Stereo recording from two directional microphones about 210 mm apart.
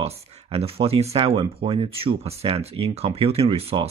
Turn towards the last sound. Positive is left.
turn(degrees=-30)  # may be behind; listen again after turning